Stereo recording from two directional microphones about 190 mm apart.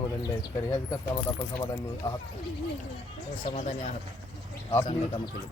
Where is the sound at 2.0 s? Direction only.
30° left (ahead or behind).